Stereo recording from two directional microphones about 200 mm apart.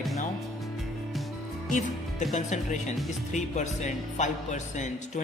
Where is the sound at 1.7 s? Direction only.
40° left (ahead or behind).